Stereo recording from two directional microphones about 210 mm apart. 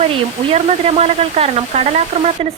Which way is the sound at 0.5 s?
30° right (ahead or behind).